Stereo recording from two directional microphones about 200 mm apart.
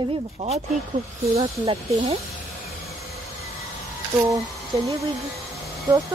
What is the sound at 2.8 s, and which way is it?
Train, centre (ahead or behind).